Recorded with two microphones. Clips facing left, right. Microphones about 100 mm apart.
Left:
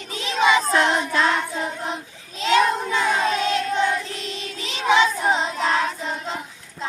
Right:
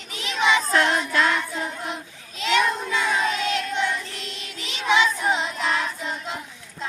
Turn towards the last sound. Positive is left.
turn(degrees=30)  # may be behind; listen again after turning